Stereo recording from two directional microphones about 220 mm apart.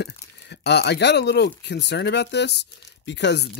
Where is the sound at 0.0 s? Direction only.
50° left (ahead or behind).